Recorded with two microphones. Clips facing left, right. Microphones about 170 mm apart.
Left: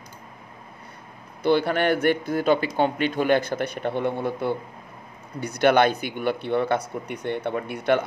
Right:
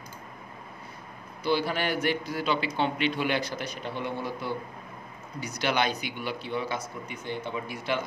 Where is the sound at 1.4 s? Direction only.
55° left (ahead or behind).